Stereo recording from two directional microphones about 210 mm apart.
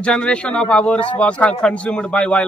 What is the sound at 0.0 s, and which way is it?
A man's voice, 5° left (ahead or behind).